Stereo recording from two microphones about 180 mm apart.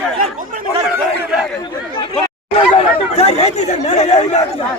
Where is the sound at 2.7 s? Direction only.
35° left (ahead or behind).